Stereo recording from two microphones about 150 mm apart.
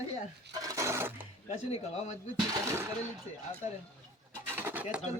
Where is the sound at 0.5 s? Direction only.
20° right (ahead or behind).